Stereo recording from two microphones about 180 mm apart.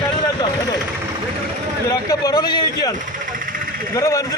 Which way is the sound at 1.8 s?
20° left (ahead or behind).